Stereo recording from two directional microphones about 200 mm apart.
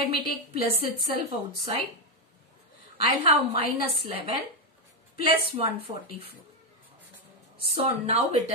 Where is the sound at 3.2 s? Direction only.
30° right (ahead or behind).